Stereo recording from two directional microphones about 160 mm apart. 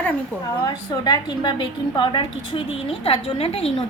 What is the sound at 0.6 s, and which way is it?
A woman's voice, 25° left (ahead or behind).